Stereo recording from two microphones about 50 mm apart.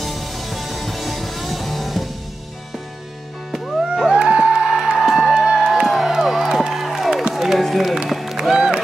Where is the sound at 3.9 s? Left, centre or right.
Centre.